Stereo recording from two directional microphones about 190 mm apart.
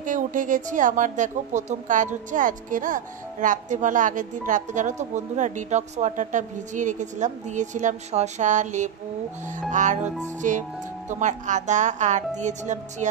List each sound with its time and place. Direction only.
0.0 s a woman's voice: 45° right (ahead or behind)